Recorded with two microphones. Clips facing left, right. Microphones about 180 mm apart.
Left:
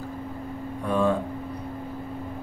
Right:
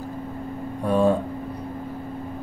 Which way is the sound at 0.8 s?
35° right (ahead or behind).